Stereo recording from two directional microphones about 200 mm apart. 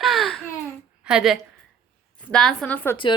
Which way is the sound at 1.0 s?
5° right (ahead or behind).